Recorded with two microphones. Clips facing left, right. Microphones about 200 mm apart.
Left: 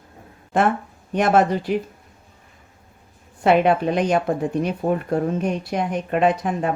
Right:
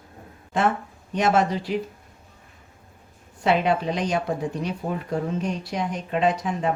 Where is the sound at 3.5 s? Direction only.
55° left (ahead or behind).